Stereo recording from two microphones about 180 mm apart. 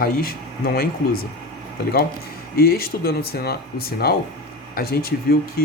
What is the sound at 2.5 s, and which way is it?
Speech, 60° left (ahead or behind).